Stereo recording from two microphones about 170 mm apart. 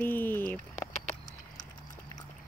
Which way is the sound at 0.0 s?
10° left (ahead or behind).